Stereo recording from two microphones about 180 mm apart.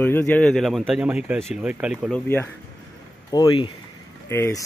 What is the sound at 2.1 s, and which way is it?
Speech, 10° left (ahead or behind).